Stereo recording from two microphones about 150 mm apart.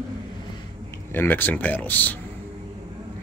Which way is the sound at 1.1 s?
15° left (ahead or behind).